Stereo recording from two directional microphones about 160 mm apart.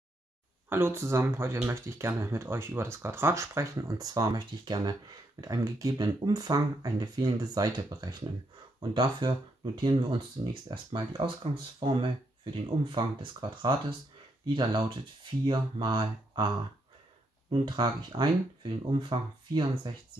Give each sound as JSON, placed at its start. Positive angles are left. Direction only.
{"t": 0.7, "sound": "speech", "side_deg": -15}
{"t": 17.5, "sound": "speech", "side_deg": -30}